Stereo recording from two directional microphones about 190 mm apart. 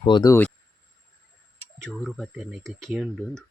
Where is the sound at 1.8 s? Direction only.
Centre (ahead or behind).